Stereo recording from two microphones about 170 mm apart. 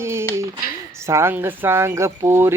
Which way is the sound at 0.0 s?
15° right (ahead or behind).